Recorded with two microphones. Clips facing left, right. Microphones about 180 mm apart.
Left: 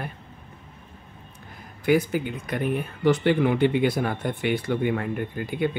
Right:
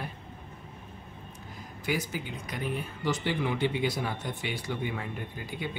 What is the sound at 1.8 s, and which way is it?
Speech, 55° left (ahead or behind).